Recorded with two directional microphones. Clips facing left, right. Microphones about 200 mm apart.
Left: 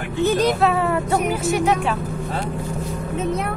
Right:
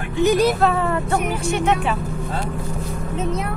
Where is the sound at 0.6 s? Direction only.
5° left (ahead or behind).